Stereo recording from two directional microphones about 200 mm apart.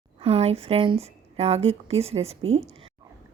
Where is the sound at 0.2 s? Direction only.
30° right (ahead or behind).